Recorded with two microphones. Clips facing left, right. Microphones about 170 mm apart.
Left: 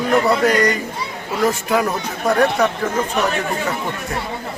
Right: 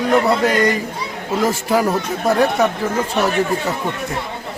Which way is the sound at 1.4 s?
30° right (ahead or behind).